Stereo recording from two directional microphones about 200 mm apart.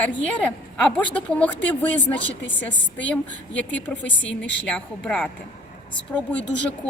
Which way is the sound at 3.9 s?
65° left (ahead or behind).